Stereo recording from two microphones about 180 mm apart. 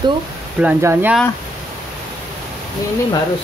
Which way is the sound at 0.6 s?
10° right (ahead or behind).